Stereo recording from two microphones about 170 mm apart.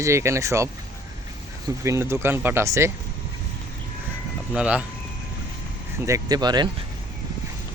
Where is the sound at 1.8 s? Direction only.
15° right (ahead or behind).